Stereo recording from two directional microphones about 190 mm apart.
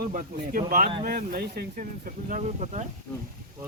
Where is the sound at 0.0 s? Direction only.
45° right (ahead or behind).